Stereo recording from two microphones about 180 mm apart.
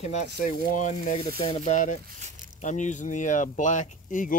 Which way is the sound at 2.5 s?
45° left (ahead or behind).